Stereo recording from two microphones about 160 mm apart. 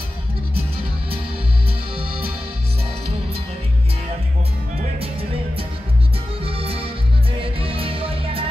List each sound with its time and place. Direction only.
6.4 s music: 35° right (ahead or behind)